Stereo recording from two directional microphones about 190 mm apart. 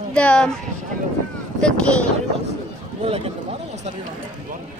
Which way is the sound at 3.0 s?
30° right (ahead or behind).